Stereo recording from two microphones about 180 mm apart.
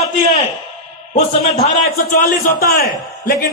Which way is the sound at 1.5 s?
55° left (ahead or behind).